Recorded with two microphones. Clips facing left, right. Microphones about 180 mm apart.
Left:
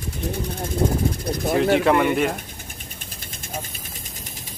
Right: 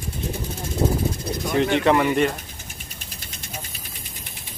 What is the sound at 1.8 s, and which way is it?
Speech, centre (ahead or behind).